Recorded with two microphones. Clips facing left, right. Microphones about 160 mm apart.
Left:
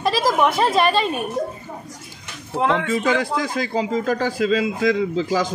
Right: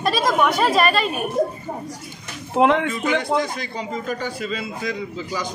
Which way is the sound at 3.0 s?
90° left.